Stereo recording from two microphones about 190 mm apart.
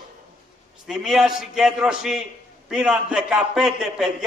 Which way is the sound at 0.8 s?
Centre (ahead or behind).